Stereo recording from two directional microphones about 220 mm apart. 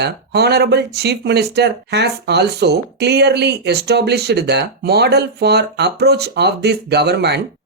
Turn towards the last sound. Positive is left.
turn(degrees=-50)  # may be behind; listen again after turning